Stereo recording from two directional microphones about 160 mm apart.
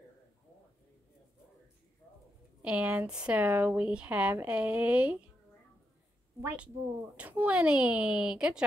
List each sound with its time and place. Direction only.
2.6 s speech: 5° right (ahead or behind)
6.4 s speech: 5° right (ahead or behind)